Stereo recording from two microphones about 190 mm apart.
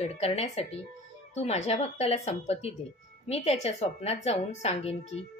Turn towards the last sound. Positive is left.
turn(degrees=35)  # may be behind; listen again after turning